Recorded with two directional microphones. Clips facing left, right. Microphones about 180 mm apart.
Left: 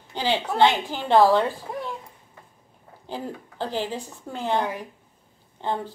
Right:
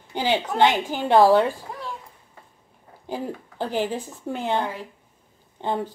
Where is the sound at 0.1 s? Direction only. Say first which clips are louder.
Right 2 dB; 15° right (ahead or behind).